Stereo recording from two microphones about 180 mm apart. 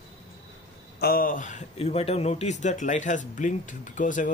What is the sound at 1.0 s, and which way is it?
Speech, 55° left (ahead or behind).